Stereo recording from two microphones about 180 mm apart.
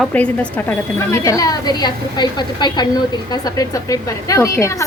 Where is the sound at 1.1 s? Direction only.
20° left (ahead or behind).